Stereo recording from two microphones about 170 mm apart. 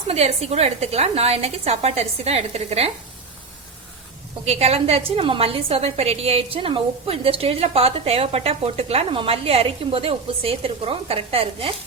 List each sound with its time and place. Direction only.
0.1 s a woman's voice: 40° right (ahead or behind)
4.4 s a woman's voice: 35° right (ahead or behind)